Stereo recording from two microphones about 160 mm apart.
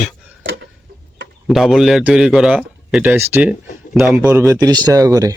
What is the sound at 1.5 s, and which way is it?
A man's voice, centre (ahead or behind).